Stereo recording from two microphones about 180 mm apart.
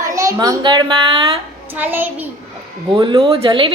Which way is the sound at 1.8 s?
10° right (ahead or behind).